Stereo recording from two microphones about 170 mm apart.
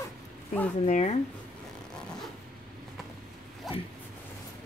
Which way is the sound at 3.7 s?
Centre (ahead or behind).